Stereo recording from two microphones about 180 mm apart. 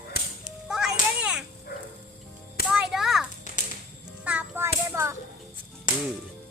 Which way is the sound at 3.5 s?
45° left (ahead or behind).